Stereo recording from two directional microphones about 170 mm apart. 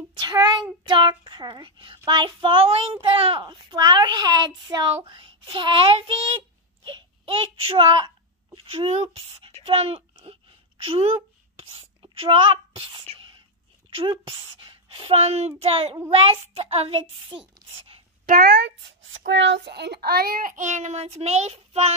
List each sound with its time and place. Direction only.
0.2 s a child's voice: 25° right (ahead or behind)
18.2 s a child's voice: 60° right (ahead or behind); by 21.9 s 40° right (ahead or behind)